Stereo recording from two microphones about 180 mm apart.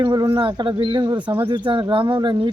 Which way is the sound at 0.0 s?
25° right (ahead or behind).